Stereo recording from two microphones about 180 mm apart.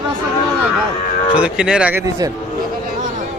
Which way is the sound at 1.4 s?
5° right (ahead or behind).